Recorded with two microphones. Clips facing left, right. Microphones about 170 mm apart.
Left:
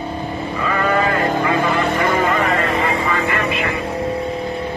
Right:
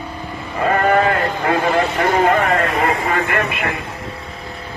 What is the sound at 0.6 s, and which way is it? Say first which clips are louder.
Sheep: right 4 dB; 55° right (ahead or behind).